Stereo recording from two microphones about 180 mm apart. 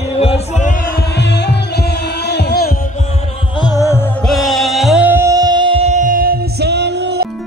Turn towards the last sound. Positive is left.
turn(degrees=-65)  # may be behind; listen again after turning